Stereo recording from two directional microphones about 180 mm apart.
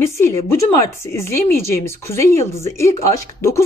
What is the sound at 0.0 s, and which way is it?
Speech, 15° left (ahead or behind).